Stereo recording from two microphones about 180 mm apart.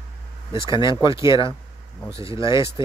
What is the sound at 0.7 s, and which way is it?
Speech, 25° left (ahead or behind).